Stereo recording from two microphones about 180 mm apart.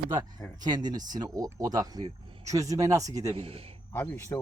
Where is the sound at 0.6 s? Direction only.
25° right (ahead or behind).